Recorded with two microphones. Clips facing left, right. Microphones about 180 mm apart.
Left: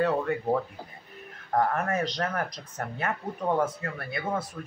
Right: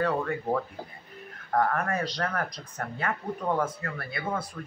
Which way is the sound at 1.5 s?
25° left (ahead or behind).